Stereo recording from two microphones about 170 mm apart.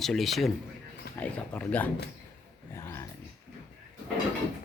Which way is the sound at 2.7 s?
15° left (ahead or behind).